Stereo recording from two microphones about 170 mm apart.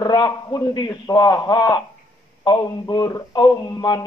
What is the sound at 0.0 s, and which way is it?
A man's voice, 25° left (ahead or behind).